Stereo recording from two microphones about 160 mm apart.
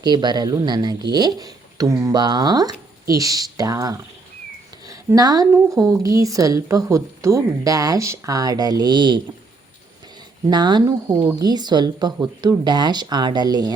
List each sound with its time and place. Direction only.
0.0 s a woman's voice: 25° right (ahead or behind)
10.4 s a woman's voice: 25° right (ahead or behind)